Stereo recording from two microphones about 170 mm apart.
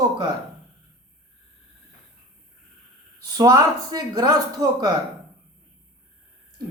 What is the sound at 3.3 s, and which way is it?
A man's voice, 20° right (ahead or behind).